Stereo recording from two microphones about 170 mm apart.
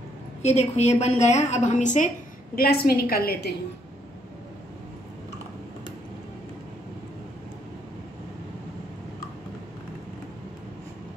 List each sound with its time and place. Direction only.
0.4 s a woman's voice: 40° left (ahead or behind)
2.5 s a woman's voice: 65° left (ahead or behind)